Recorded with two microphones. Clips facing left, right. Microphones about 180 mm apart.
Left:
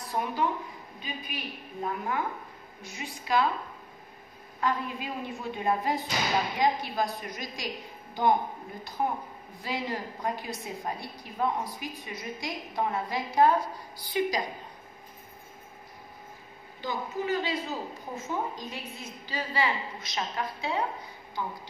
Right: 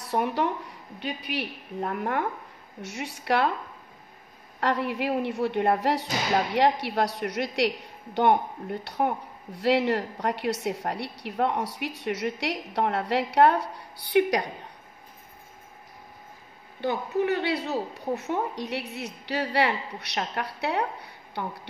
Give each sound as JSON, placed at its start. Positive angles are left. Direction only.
{"t": 0.1, "sound": "a woman's voice", "side_deg": -70}
{"t": 4.6, "sound": "a woman's voice", "side_deg": -75}
{"t": 16.8, "sound": "a woman's voice", "side_deg": -65}